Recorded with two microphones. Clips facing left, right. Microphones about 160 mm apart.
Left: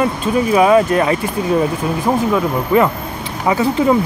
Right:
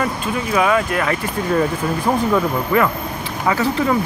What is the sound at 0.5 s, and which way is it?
Speech, 25° left (ahead or behind).